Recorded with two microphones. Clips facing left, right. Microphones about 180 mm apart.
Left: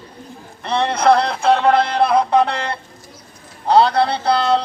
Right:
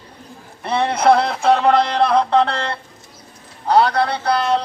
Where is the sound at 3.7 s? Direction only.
30° left (ahead or behind).